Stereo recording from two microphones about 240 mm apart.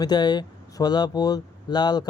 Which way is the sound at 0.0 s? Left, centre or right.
Centre.